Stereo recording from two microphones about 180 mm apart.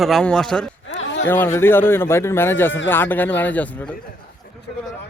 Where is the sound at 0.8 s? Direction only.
90° left.